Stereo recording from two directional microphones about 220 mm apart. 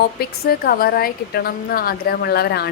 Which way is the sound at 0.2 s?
45° left (ahead or behind).